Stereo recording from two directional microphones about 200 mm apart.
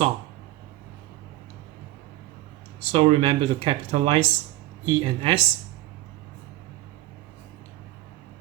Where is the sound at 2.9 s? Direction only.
30° right (ahead or behind).